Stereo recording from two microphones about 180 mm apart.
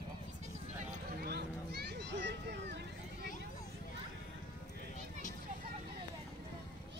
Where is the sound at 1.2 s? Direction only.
60° right (ahead or behind).